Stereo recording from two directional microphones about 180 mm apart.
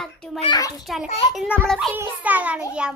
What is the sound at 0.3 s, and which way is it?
Speech, 25° left (ahead or behind).